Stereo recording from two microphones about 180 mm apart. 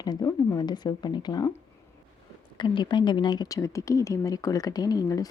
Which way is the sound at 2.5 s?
25° left (ahead or behind).